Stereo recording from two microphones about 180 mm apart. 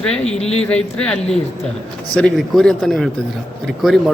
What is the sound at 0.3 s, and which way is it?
Speech, 35° left (ahead or behind).